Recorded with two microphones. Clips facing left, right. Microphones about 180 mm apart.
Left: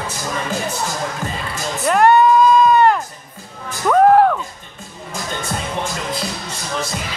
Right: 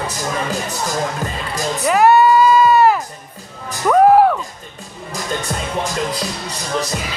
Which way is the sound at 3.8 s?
5° right (ahead or behind).